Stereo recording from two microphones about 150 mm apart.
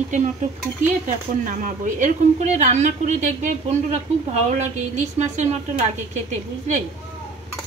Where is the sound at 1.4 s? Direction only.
60° right (ahead or behind).